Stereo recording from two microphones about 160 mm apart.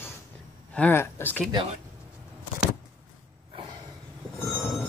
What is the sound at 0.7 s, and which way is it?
Speech, 10° left (ahead or behind).